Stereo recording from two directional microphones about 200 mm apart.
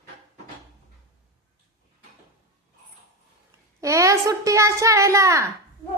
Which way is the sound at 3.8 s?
15° right (ahead or behind).